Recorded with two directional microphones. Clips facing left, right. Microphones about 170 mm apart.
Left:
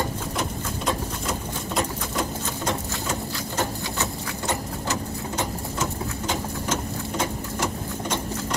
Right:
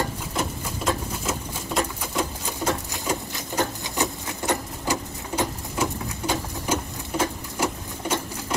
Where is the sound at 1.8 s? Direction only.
5° right (ahead or behind).